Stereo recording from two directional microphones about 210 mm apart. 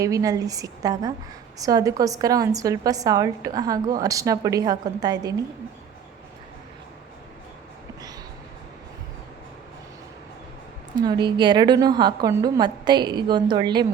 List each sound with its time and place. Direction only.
0.0 s a woman's voice: 15° right (ahead or behind)
11.0 s a woman's voice: 20° right (ahead or behind)